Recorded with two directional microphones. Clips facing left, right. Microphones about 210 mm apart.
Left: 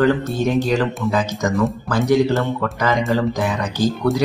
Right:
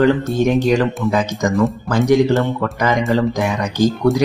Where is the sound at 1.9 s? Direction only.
15° right (ahead or behind).